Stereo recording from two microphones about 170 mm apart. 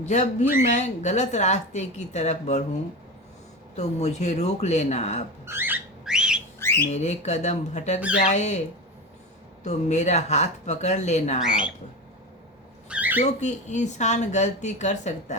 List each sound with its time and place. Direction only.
0.0 s speech: 40° left (ahead or behind)
3.8 s speech: 40° left (ahead or behind)
5.5 s a sound: 10° right (ahead or behind)
6.6 s squawk: 15° left (ahead or behind)
6.8 s speech: 40° left (ahead or behind)
9.6 s speech: 40° left (ahead or behind)
12.9 s a sound: 10° right (ahead or behind)
13.2 s speech: 45° left (ahead or behind)